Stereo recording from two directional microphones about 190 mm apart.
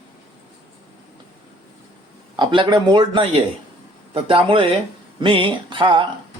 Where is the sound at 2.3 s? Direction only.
25° right (ahead or behind).